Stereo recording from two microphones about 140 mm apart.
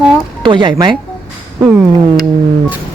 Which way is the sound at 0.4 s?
35° right (ahead or behind).